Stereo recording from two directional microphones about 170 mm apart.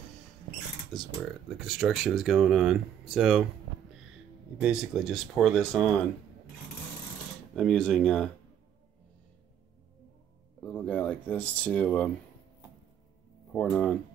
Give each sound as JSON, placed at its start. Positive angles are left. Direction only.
{"t": 0.9, "sound": "speech", "side_deg": 5}
{"t": 4.6, "sound": "speech", "side_deg": -5}
{"t": 7.5, "sound": "speech", "side_deg": 5}
{"t": 10.6, "sound": "speech", "side_deg": 10}
{"t": 13.5, "sound": "speech", "side_deg": 5}